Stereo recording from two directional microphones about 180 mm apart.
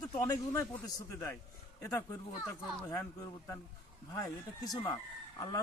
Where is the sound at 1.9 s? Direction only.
15° left (ahead or behind).